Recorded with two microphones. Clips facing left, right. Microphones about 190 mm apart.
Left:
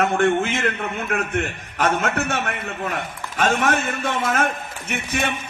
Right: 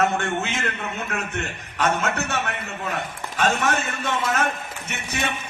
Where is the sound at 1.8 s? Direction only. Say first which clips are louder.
Left 2 dB; 50° left (ahead or behind).